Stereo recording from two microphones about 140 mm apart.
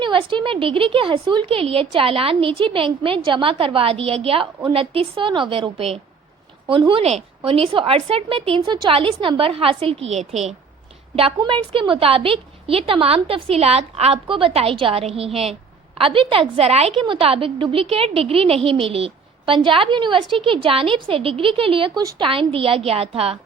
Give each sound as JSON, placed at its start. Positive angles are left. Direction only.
{"t": 0.0, "sound": "a woman's voice", "side_deg": -35}